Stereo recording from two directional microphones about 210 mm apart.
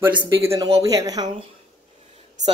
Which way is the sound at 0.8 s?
15° right (ahead or behind).